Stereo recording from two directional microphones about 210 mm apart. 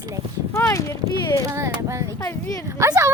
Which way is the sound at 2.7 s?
15° right (ahead or behind).